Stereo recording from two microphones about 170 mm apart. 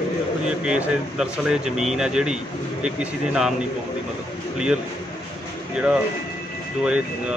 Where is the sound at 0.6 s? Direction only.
5° right (ahead or behind).